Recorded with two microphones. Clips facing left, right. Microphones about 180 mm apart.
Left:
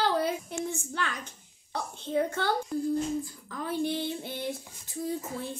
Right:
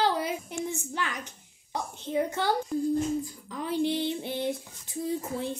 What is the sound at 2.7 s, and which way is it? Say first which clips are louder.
Speech: right 2 dB; centre (ahead or behind).